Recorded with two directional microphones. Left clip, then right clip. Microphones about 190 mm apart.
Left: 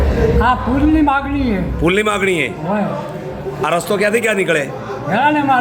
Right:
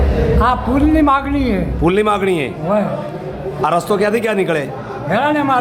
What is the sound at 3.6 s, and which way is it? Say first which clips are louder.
A man's voice: right 1 dB; 25° right (ahead or behind).